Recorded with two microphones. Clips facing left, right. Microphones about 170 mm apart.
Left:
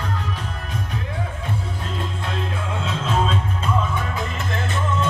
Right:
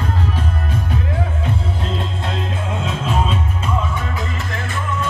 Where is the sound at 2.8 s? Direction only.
15° right (ahead or behind).